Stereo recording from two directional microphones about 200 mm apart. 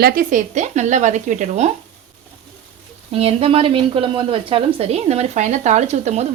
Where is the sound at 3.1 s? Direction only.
30° right (ahead or behind).